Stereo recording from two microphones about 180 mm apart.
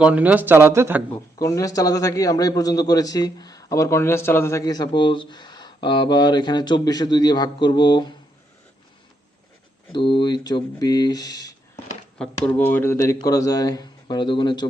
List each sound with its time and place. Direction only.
0.0 s speech: 5° right (ahead or behind)
1.1 s a man's voice: 15° left (ahead or behind)
9.9 s a man's voice: 25° left (ahead or behind)
12.2 s a man's voice: 10° left (ahead or behind); by 14.7 s 25° left (ahead or behind)